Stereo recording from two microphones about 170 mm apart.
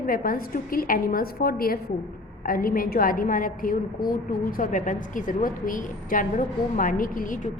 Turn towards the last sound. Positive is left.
turn(degrees=50)  # may be behind; listen again after turning